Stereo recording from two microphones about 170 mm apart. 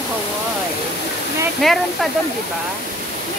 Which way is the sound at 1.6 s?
Centre (ahead or behind).